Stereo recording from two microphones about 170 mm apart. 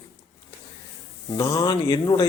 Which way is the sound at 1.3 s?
15° left (ahead or behind).